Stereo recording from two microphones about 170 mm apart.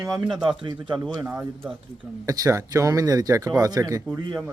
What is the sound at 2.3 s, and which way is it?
Speech, 20° right (ahead or behind).